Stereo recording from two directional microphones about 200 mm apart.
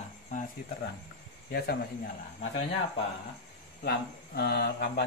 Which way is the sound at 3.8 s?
50° left (ahead or behind).